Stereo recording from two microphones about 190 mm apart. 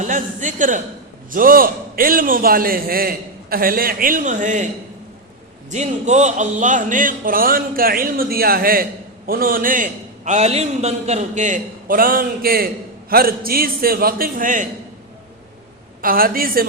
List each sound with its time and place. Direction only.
0.1 s a man's voice: 40° right (ahead or behind)
5.7 s speech: 35° right (ahead or behind)
16.0 s speech: 50° right (ahead or behind)